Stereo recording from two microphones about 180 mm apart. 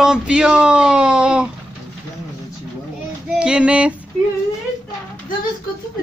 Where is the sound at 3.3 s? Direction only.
5° right (ahead or behind).